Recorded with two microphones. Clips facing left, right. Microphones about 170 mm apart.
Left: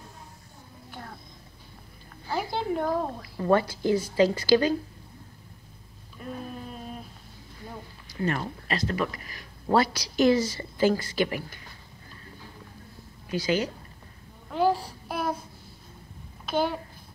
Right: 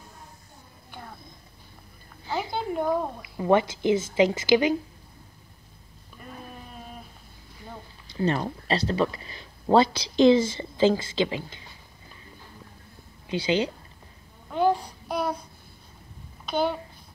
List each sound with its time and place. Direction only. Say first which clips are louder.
2.3 s speech: even; centre (ahead or behind)
3.2 s speech: right 1 dB; 20° right (ahead or behind)
8.1 s speech: right 3 dB; 30° right (ahead or behind)
13.3 s speech: right 2 dB; 25° right (ahead or behind)
14.5 s child singing: right 1 dB; 5° left (ahead or behind)
16.4 s a child's voice: right 1 dB; 5° left (ahead or behind)